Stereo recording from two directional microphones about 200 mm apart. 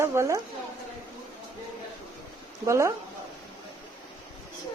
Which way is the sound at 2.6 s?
15° right (ahead or behind).